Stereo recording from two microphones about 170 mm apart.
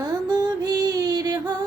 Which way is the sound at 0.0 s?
25° right (ahead or behind).